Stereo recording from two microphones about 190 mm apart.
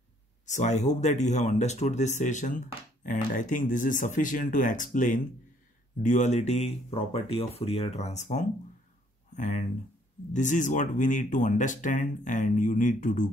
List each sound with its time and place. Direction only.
0.5 s speech: 40° left (ahead or behind)